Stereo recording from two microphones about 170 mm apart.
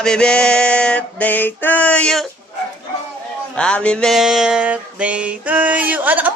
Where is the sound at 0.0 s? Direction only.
5° left (ahead or behind).